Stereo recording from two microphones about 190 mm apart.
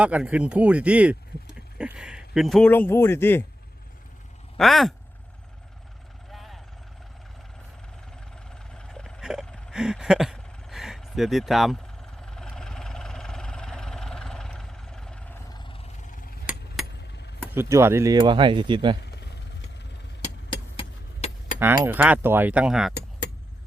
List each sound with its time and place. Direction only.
0.0 s speech: 5° right (ahead or behind); by 3.4 s 10° left (ahead or behind)
4.5 s speech: centre (ahead or behind)
6.3 s vehicle: centre (ahead or behind)
8.4 s a sound: 5° left (ahead or behind)
15.4 s a sound: 25° left (ahead or behind); by 16.3 s 45° left (ahead or behind)
17.0 s a sound: 65° left (ahead or behind)
17.5 s speech: 15° right (ahead or behind)
19.0 s vehicle: 60° left (ahead or behind)
20.7 s vehicle: 35° left (ahead or behind)
21.8 s speech: 10° right (ahead or behind)